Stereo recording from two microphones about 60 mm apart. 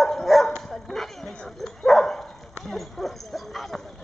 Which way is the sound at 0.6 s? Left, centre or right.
Centre.